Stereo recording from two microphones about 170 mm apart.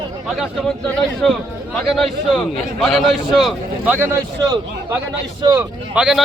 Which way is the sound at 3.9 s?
15° right (ahead or behind).